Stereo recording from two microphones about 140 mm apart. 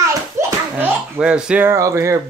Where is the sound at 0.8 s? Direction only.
10° right (ahead or behind).